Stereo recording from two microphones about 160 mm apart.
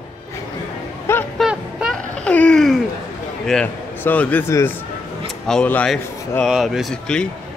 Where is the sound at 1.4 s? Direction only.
5° right (ahead or behind).